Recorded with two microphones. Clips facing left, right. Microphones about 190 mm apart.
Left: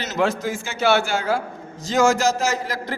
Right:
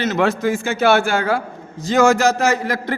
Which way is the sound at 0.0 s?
60° right (ahead or behind).